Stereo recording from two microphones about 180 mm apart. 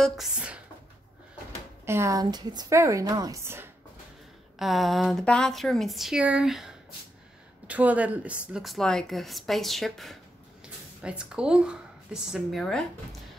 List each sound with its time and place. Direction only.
0.0 s speech: 5° right (ahead or behind)
1.9 s a woman's voice: 15° right (ahead or behind)
4.6 s speech: centre (ahead or behind)